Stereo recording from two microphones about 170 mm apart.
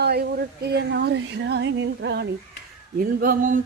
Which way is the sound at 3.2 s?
55° right (ahead or behind).